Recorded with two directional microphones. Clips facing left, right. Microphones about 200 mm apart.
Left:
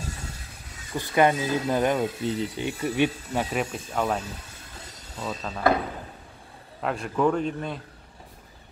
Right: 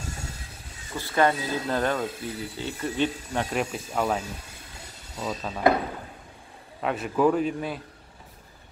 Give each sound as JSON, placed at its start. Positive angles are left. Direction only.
{"t": 0.9, "sound": "speech", "side_deg": 15}
{"t": 5.1, "sound": "dishes", "side_deg": -5}
{"t": 6.8, "sound": "a man's voice", "side_deg": 0}